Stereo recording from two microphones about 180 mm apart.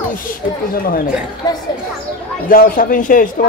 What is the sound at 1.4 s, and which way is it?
Children playing, 20° left (ahead or behind).